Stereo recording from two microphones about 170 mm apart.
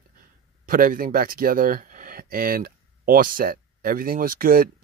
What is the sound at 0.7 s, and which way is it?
Speech, 55° right (ahead or behind).